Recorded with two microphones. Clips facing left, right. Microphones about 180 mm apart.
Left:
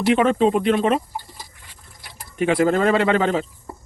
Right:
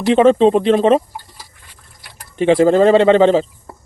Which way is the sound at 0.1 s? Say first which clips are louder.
Right 7 dB; 30° right (ahead or behind).